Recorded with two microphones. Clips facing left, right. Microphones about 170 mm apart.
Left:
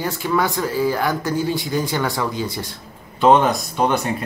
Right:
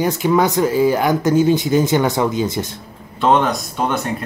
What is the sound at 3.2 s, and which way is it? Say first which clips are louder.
Speech: left 1 dB; centre (ahead or behind).